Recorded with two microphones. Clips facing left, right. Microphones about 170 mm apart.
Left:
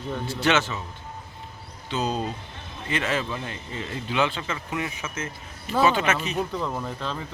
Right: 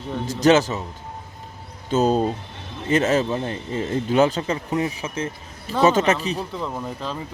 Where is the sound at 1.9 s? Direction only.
45° right (ahead or behind).